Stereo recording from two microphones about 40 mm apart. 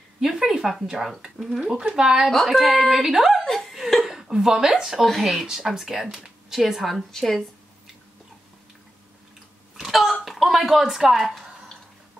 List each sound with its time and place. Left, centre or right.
0.2 s a sound: centre
0.8 s a woman's voice: centre
2.0 s speech: centre
2.4 s a woman's voice: centre
3.3 s laughter: centre
3.7 s chuckle: centre
5.2 s a woman's voice: centre
7.1 s speech: centre
9.8 s a sound: centre